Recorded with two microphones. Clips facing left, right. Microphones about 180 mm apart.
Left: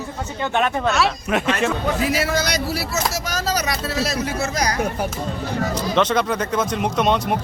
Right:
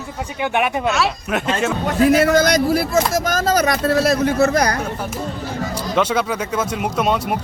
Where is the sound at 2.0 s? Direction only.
50° right (ahead or behind).